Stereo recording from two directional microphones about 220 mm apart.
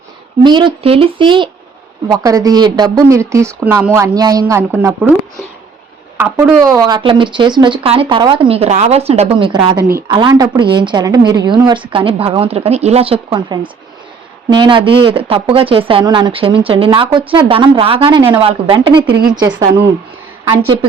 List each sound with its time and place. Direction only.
0.4 s a woman's voice: 20° right (ahead or behind)
6.1 s a woman's voice: 10° right (ahead or behind)